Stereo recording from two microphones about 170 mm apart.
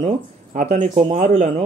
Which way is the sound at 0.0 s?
45° right (ahead or behind).